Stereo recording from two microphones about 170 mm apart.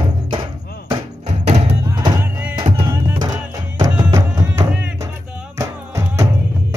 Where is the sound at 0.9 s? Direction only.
35° right (ahead or behind).